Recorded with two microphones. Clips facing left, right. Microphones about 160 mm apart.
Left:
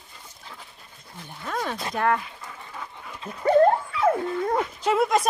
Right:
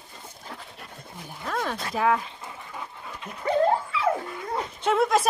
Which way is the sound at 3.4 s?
50° left (ahead or behind).